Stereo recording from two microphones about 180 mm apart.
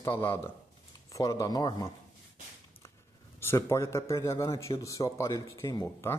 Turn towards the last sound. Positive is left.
turn(degrees=15)  # may be behind; listen again after turning